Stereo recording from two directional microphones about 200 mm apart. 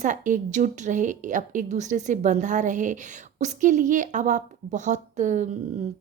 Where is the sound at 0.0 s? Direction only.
40° right (ahead or behind).